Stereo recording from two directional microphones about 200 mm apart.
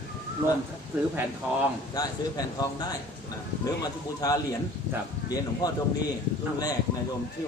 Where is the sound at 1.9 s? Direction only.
20° left (ahead or behind).